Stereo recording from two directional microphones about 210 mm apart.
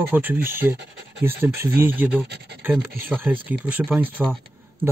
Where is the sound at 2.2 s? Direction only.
50° right (ahead or behind).